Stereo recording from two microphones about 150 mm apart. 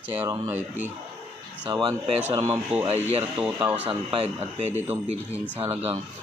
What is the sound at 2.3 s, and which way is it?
Speech, 30° right (ahead or behind).